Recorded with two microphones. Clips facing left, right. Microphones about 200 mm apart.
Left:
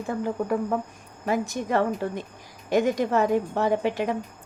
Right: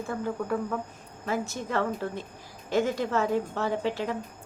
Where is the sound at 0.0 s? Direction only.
15° left (ahead or behind).